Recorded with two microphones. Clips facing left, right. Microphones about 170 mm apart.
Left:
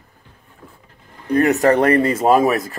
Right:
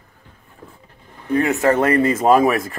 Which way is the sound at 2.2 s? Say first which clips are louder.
Even; centre (ahead or behind).